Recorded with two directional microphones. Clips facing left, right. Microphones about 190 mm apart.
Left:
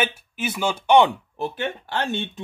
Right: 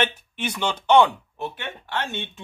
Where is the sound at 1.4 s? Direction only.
35° left (ahead or behind).